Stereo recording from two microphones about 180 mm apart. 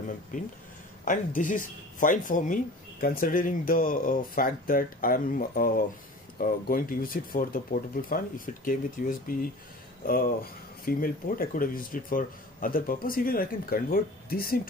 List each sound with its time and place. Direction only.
1.0 s speech: 45° left (ahead or behind)